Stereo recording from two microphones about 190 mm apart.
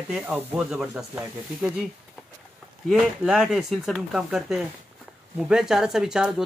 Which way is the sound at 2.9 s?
5° right (ahead or behind).